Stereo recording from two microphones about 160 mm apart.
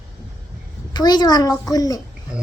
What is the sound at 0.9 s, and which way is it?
A woman's voice, 25° left (ahead or behind).